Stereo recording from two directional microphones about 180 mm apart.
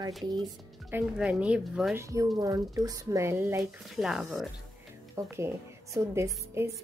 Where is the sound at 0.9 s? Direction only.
5° right (ahead or behind).